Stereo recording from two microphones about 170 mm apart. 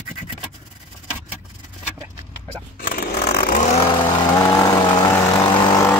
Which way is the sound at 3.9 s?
25° left (ahead or behind).